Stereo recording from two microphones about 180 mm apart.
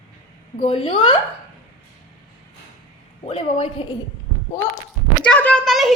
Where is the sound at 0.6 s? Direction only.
30° left (ahead or behind).